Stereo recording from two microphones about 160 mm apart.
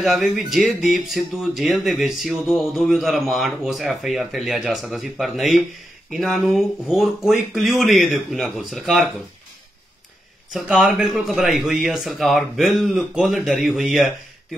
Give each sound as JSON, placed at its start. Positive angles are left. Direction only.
{"t": 0.0, "sound": "speech", "side_deg": 0}
{"t": 10.5, "sound": "speech", "side_deg": 0}